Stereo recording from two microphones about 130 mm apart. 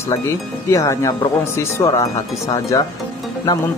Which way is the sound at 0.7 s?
25° left (ahead or behind).